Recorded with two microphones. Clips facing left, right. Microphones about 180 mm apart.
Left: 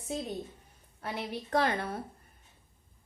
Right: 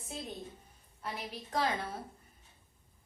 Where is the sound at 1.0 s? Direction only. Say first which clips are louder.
Left 5 dB; 65° left (ahead or behind).